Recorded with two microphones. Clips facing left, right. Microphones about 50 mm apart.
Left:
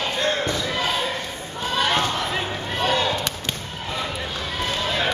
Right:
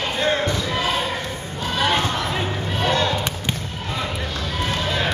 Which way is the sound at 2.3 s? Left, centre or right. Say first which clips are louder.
Right 1 dB; centre.